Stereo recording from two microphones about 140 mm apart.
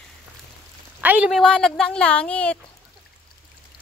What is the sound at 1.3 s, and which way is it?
Speech, 5° left (ahead or behind).